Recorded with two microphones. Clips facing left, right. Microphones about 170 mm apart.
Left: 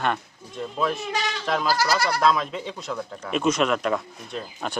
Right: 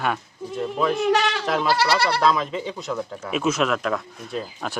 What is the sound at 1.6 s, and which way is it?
Speech, 30° right (ahead or behind).